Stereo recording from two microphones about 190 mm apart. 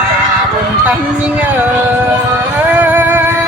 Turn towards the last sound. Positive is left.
turn(degrees=-10)  # may be behind; listen again after turning